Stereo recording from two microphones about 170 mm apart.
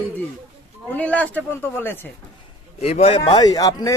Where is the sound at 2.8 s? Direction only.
35° left (ahead or behind).